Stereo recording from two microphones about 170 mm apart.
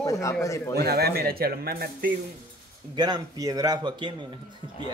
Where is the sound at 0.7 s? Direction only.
70° right (ahead or behind).